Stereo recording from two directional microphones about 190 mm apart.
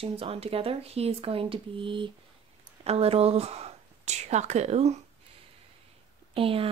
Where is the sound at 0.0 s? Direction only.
30° right (ahead or behind).